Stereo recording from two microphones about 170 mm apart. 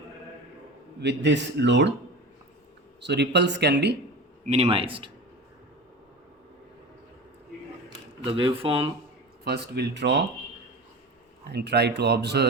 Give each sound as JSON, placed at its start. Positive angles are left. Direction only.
{"t": 1.0, "sound": "speech", "side_deg": -90}
{"t": 3.0, "sound": "speech", "side_deg": -85}
{"t": 4.4, "sound": "a man's voice", "side_deg": -40}
{"t": 8.2, "sound": "a man's voice", "side_deg": -30}
{"t": 9.4, "sound": "speech", "side_deg": -70}
{"t": 11.4, "sound": "speech", "side_deg": -80}